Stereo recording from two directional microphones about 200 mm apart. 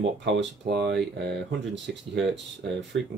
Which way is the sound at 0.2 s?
60° right (ahead or behind).